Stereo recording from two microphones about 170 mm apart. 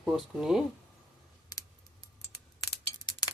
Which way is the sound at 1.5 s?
20° left (ahead or behind).